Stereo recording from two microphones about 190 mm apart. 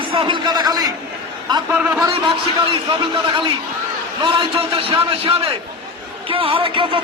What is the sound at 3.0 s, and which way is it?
A man's voice, 25° right (ahead or behind).